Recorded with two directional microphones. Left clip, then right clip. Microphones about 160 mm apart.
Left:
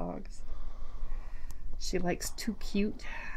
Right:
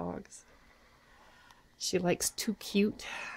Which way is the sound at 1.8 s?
45° right (ahead or behind).